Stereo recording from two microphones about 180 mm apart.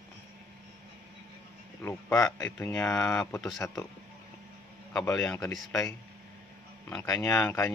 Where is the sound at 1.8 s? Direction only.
10° left (ahead or behind).